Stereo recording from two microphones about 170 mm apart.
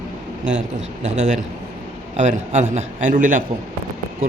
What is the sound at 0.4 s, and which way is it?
Speech, 90° right.